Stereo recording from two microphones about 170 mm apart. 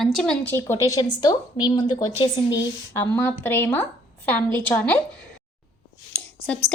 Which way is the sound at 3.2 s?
10° left (ahead or behind).